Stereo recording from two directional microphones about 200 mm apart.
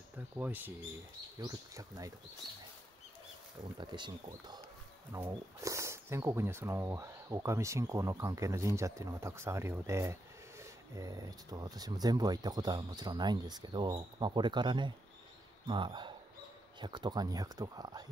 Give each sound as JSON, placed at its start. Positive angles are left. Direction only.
{"t": 0.4, "sound": "speech", "side_deg": -10}
{"t": 3.7, "sound": "speech", "side_deg": -20}